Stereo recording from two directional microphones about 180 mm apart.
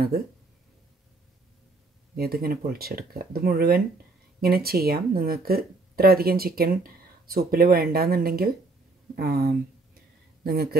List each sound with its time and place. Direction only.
2.1 s speech: 55° right (ahead or behind)